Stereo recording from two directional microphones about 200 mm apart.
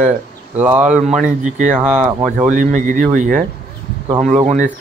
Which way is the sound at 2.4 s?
40° right (ahead or behind).